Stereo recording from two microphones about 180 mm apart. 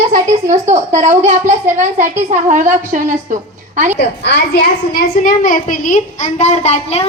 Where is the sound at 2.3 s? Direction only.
45° right (ahead or behind).